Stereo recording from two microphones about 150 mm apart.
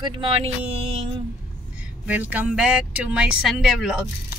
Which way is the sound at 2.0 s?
10° right (ahead or behind).